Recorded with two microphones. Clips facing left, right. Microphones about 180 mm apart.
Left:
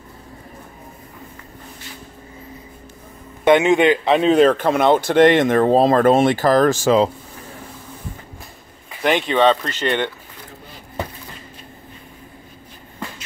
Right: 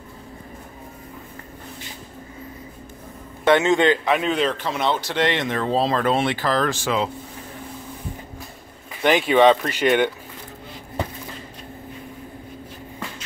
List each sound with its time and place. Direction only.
3.4 s a man's voice: 15° left (ahead or behind)
4.3 s speech: 50° left (ahead or behind)
9.0 s speech: 5° right (ahead or behind)